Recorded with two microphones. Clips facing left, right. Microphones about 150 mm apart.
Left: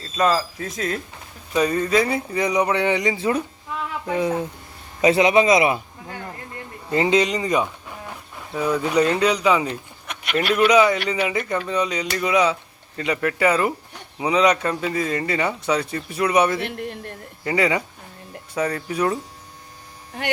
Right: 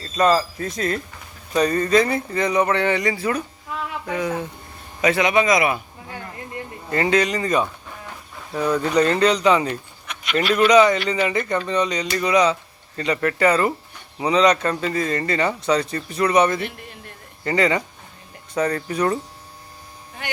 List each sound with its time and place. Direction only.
0.0 s a man's voice: centre (ahead or behind); by 5.8 s 25° left (ahead or behind)
6.9 s a man's voice: 20° left (ahead or behind)
10.1 s a sound: 55° left (ahead or behind)
10.5 s speech: 5° left (ahead or behind)
16.6 s speech: 65° left (ahead or behind)
17.4 s speech: 10° left (ahead or behind)